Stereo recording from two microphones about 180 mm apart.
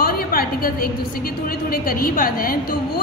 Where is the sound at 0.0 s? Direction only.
55° left (ahead or behind).